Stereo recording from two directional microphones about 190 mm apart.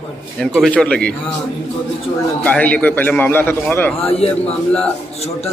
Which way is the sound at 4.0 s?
30° left (ahead or behind).